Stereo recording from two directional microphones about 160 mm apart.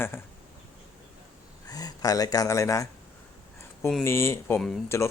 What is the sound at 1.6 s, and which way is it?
Speech, 25° left (ahead or behind).